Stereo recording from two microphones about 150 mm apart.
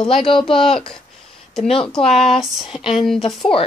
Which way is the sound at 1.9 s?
5° left (ahead or behind).